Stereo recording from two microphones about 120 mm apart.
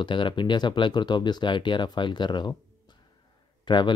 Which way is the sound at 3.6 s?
40° left (ahead or behind).